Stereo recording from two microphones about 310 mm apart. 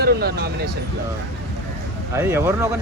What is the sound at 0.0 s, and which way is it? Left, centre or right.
Speech, right.